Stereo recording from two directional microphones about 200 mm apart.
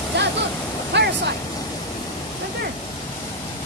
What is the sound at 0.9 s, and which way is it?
Waterfall, 60° right (ahead or behind).